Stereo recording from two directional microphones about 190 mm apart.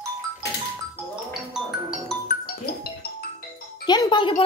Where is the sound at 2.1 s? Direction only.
5° left (ahead or behind).